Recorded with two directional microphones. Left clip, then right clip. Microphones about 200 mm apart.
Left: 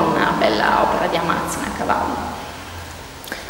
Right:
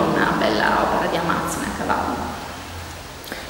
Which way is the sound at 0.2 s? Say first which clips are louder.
Left 2 dB; centre (ahead or behind).